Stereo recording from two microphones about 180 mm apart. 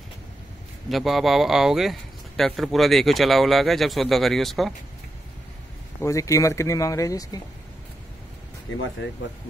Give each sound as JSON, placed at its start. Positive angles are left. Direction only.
{"t": 0.8, "sound": "speech", "side_deg": 0}
{"t": 6.0, "sound": "speech", "side_deg": 15}